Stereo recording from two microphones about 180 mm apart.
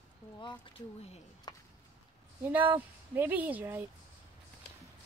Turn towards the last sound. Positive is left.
turn(degrees=-10)  # may be behind; listen again after turning